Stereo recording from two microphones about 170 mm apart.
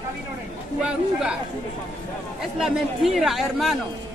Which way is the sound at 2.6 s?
Centre (ahead or behind).